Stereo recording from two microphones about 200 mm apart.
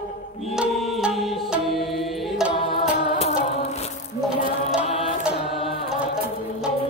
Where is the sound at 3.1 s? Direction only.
45° left (ahead or behind).